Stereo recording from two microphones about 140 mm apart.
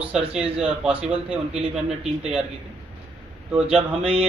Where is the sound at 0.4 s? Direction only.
5° right (ahead or behind).